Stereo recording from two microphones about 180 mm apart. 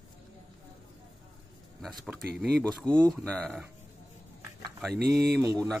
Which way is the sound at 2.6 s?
5° left (ahead or behind).